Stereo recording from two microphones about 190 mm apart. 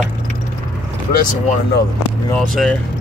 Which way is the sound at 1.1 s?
45° left (ahead or behind).